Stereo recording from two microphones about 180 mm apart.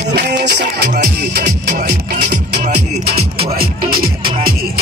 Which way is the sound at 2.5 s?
40° right (ahead or behind).